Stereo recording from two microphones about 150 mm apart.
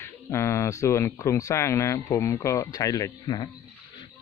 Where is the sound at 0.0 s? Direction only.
15° left (ahead or behind).